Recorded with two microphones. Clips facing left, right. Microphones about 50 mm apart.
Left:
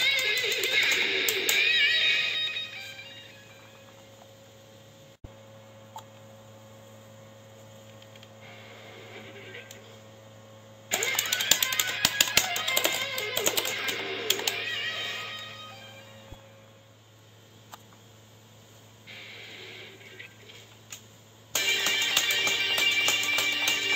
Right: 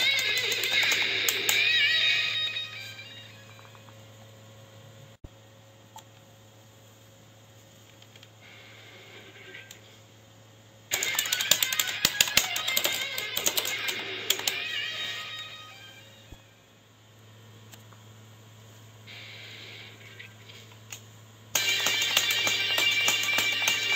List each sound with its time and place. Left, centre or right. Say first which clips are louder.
0.0 s music: left 1 dB; centre
10.9 s engine starting: left 2 dB; left
11.1 s music: even; centre
13.6 s bird: left 1 dB; centre
14.7 s music: left 1 dB; left
19.0 s a sound: left 1 dB; centre
21.5 s music: left 1 dB; centre